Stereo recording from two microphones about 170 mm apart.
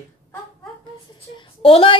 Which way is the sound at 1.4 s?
30° left (ahead or behind).